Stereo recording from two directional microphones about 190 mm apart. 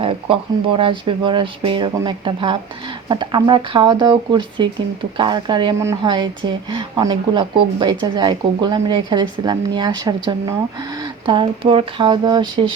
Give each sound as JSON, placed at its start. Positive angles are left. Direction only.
{"t": 0.0, "sound": "speech", "side_deg": -30}